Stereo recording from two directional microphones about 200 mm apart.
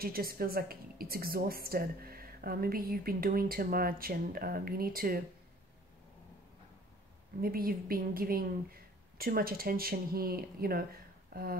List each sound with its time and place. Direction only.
0.0 s a woman's voice: 50° right (ahead or behind)
7.4 s a woman's voice: 45° right (ahead or behind)